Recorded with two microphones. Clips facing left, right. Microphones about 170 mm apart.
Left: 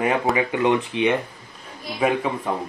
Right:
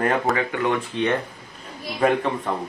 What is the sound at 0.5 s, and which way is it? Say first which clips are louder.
Speech: left 3 dB; 20° left (ahead or behind).